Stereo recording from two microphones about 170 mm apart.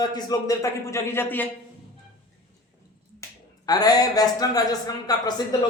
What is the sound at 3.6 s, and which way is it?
A man's voice, 25° left (ahead or behind).